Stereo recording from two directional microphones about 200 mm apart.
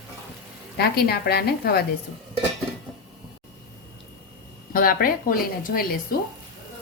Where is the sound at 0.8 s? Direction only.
50° left (ahead or behind).